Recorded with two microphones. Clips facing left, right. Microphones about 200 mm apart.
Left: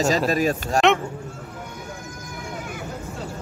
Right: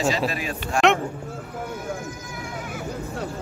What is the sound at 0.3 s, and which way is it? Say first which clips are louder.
Speech: left 7 dB; 40° left (ahead or behind).